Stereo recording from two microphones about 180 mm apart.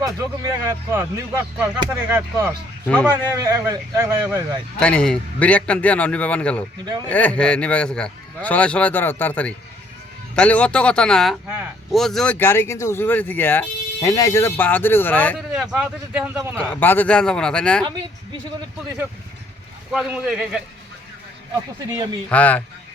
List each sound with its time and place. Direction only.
0.0 s speech: 20° right (ahead or behind)
2.8 s speech: 10° left (ahead or behind)
3.3 s speech: 20° right (ahead or behind)
4.8 s speech: 5° left (ahead or behind)
15.5 s speech: 5° right (ahead or behind)
16.8 s speech: 10° left (ahead or behind)
19.9 s speech: 5° right (ahead or behind)
21.8 s speech: 20° right (ahead or behind)
22.3 s speech: 10° left (ahead or behind)